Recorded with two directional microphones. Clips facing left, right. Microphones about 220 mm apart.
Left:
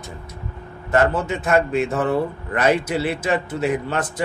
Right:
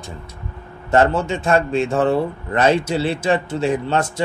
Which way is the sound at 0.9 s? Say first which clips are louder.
Right 2 dB; 30° right (ahead or behind).